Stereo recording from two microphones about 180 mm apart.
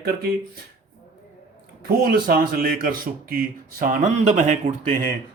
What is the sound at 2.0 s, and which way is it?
Speech, 55° right (ahead or behind).